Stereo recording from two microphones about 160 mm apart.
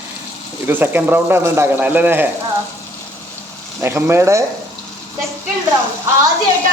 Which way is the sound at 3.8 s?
15° right (ahead or behind).